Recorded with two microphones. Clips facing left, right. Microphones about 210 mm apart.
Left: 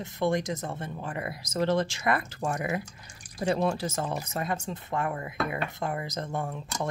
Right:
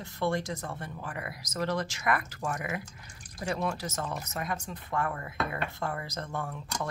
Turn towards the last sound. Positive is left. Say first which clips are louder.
# left 3 dB
turn(degrees=20)  # may be behind; listen again after turning